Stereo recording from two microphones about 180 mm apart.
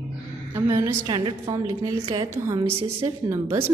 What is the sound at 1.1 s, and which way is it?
A woman's voice, 25° right (ahead or behind).